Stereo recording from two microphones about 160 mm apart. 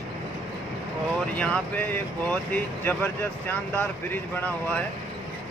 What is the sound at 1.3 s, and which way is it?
Speech, 10° left (ahead or behind).